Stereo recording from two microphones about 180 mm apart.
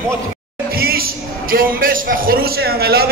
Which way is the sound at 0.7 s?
55° right (ahead or behind).